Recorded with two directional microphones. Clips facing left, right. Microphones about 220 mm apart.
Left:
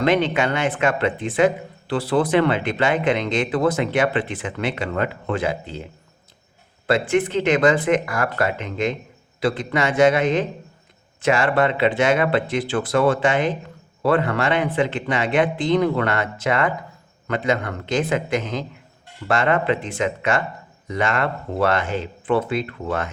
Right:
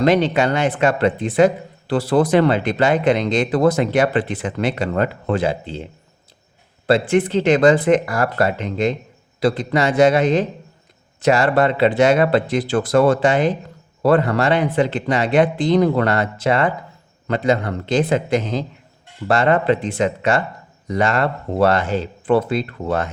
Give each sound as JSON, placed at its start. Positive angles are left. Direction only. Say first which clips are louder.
{"t": 0.0, "sound": "speech", "louder": "right 3 dB", "side_deg": -40}